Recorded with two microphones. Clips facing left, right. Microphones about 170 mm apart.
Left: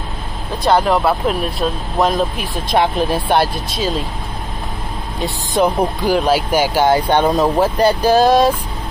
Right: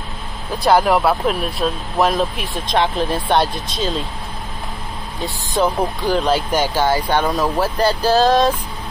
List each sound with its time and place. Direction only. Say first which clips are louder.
0.7 s speech: even; 5° right (ahead or behind)
5.2 s speech: left 3 dB; 15° left (ahead or behind)